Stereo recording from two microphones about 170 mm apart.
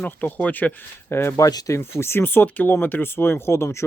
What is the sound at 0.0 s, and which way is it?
Speech, 10° left (ahead or behind).